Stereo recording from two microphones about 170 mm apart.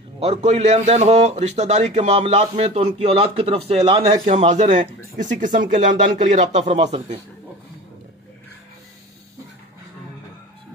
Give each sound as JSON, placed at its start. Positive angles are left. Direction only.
{"t": 0.2, "sound": "a man's voice", "side_deg": -35}